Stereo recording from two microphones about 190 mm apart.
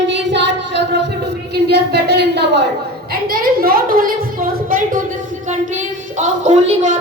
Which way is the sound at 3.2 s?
50° right (ahead or behind).